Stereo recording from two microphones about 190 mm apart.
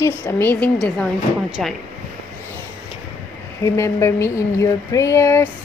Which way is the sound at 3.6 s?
15° left (ahead or behind).